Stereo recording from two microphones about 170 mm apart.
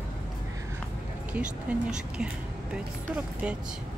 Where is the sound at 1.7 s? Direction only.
10° right (ahead or behind).